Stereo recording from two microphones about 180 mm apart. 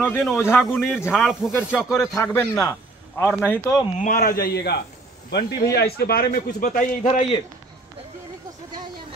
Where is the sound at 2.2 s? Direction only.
15° left (ahead or behind).